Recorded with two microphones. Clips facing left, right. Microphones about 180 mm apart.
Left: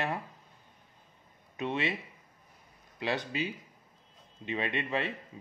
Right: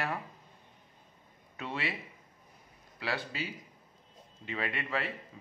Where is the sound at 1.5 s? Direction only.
20° left (ahead or behind).